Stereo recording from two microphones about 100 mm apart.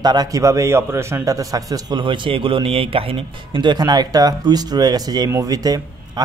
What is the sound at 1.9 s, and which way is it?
A man's voice, 55° right (ahead or behind).